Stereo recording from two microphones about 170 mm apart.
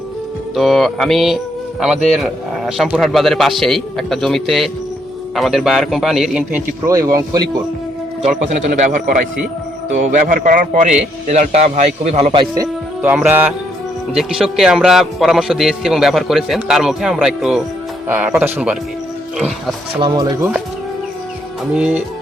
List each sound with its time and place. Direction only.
0.5 s a man's voice: centre (ahead or behind)
6.8 s speech: 20° right (ahead or behind)
8.2 s a man's voice: 40° right (ahead or behind)
13.0 s a man's voice: 10° right (ahead or behind)
20.0 s speech: 25° right (ahead or behind)
21.8 s speech: 5° right (ahead or behind)